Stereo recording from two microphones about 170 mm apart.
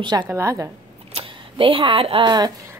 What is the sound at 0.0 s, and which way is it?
Speech, 25° right (ahead or behind).